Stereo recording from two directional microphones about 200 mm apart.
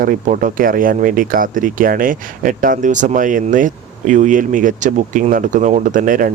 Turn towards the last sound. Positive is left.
turn(degrees=-40)  # may be behind; listen again after turning